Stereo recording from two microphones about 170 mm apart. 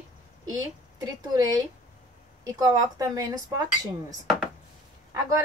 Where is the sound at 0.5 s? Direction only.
20° right (ahead or behind).